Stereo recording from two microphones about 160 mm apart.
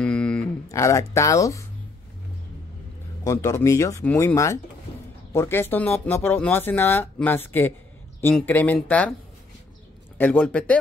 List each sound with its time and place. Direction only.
0.0 s a sound: 5° left (ahead or behind)
0.7 s speech: 20° left (ahead or behind)
3.3 s speech: 15° left (ahead or behind)
10.1 s speech: 10° left (ahead or behind)